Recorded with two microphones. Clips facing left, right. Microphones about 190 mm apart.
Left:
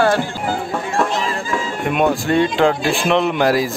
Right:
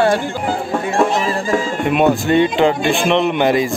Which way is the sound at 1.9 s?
Centre (ahead or behind).